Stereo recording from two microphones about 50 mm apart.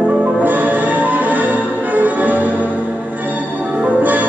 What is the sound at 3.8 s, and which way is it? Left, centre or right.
Music, right.